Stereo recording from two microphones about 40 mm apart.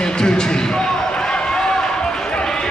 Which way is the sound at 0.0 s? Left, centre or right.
Left.